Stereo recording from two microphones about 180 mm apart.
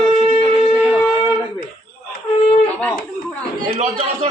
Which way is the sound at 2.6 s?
10° left (ahead or behind).